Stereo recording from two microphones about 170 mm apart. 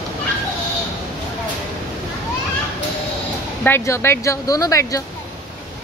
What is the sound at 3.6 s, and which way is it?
Speech, 15° left (ahead or behind).